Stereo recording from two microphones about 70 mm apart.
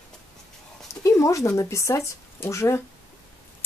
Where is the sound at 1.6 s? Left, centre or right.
Left.